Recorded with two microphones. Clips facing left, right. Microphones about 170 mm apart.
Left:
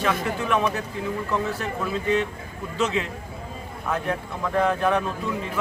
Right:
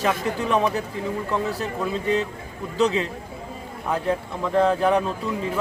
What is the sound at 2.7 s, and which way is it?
Speech, 35° right (ahead or behind).